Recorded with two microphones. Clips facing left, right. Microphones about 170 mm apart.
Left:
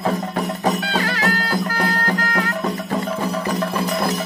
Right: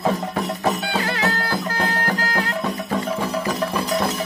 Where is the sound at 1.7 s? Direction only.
20° right (ahead or behind).